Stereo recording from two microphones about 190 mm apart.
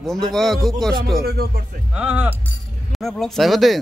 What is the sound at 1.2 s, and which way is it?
Speech, 55° right (ahead or behind).